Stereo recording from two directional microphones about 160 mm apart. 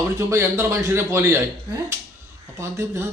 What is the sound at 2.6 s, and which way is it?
Speech, 20° right (ahead or behind).